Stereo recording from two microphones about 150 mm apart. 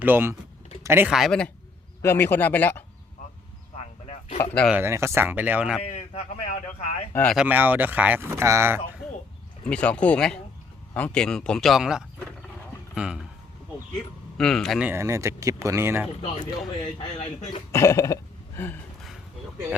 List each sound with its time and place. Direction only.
0.0 s speech: 15° right (ahead or behind)
1.1 s speech: centre (ahead or behind)
2.0 s speech: 15° left (ahead or behind)
4.0 s a sound: 45° left (ahead or behind)
4.7 s speech: 15° right (ahead or behind)
5.9 s speech: 50° left (ahead or behind)
7.1 s speech: 10° left (ahead or behind)
7.3 s speech: 10° right (ahead or behind)
9.6 s speech: 5° left (ahead or behind)
14.3 s speech: 5° left (ahead or behind)
14.8 s speech: 15° right (ahead or behind)
16.8 s speech: 40° left (ahead or behind)
17.7 s throat clearing: 20° left (ahead or behind)